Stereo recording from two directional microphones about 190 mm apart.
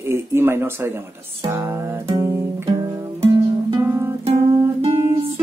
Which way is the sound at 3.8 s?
15° right (ahead or behind).